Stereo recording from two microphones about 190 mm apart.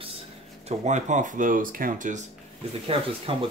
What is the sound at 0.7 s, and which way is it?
Speech, 40° right (ahead or behind).